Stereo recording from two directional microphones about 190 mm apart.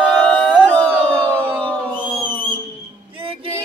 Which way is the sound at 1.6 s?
5° left (ahead or behind).